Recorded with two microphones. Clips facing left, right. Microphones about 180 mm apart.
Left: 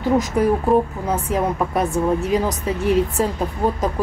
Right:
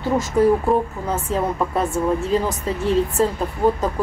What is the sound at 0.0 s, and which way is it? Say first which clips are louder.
A woman's voice: even; 15° left (ahead or behind).